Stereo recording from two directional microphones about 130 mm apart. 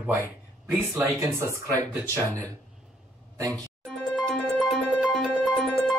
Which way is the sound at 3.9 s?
5° left (ahead or behind).